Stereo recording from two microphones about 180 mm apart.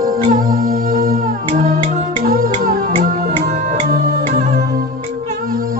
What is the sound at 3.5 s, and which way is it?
Music, 45° right (ahead or behind).